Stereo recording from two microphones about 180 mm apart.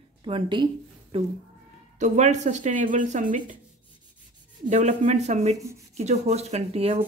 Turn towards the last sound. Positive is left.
turn(degrees=-35)  # may be behind; listen again after turning